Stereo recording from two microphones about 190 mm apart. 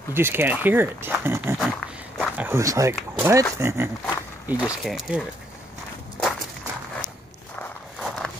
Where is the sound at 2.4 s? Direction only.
15° right (ahead or behind).